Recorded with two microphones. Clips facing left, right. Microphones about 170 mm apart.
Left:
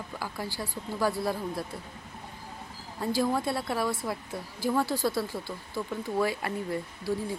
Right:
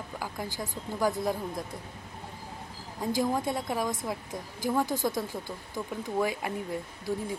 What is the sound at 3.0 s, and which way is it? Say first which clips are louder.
Speech: left 1 dB; 15° right (ahead or behind).